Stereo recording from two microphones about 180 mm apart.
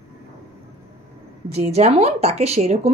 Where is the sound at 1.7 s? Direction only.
35° right (ahead or behind).